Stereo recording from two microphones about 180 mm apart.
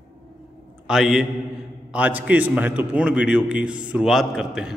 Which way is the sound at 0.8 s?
5° right (ahead or behind).